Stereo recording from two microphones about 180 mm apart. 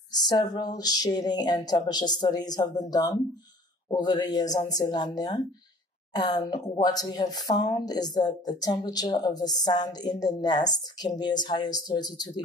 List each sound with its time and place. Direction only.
0.1 s speech: 25° left (ahead or behind)